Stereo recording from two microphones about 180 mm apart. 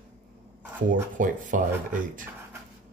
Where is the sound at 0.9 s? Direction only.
45° right (ahead or behind).